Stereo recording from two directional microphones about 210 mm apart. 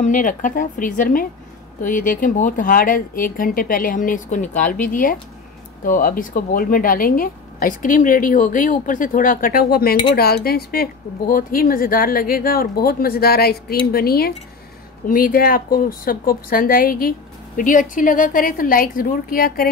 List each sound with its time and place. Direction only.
0.0 s a woman's voice: 40° left (ahead or behind)